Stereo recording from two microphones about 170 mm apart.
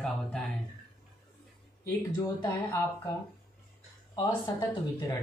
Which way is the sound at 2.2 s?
15° left (ahead or behind).